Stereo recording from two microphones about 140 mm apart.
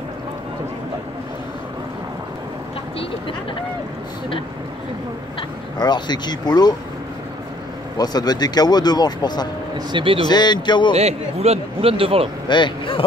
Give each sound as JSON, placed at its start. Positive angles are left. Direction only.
{"t": 5.8, "sound": "speech", "side_deg": 30}
{"t": 8.0, "sound": "speech", "side_deg": 30}
{"t": 9.9, "sound": "a man's voice", "side_deg": -40}
{"t": 10.2, "sound": "speech", "side_deg": 30}
{"t": 11.0, "sound": "speech", "side_deg": -50}
{"t": 12.4, "sound": "speech", "side_deg": 35}